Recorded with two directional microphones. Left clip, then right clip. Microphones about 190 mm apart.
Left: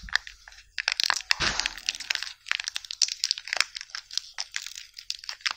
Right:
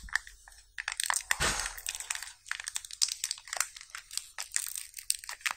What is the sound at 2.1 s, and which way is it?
Computer keyboard, 15° left (ahead or behind).